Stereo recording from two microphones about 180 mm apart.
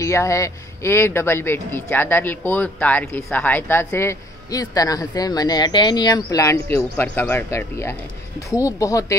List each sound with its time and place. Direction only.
0.0 s a man's voice: 15° left (ahead or behind)